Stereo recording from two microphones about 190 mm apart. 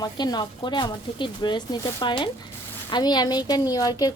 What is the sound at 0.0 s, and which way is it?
A woman's voice, 20° left (ahead or behind).